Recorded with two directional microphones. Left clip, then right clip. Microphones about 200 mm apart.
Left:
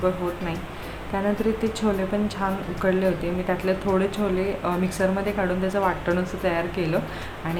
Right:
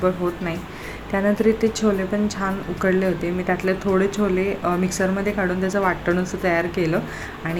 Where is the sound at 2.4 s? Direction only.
10° right (ahead or behind).